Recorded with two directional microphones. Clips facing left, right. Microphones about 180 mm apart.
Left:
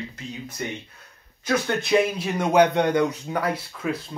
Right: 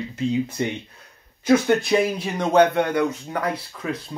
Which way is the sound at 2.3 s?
15° left (ahead or behind).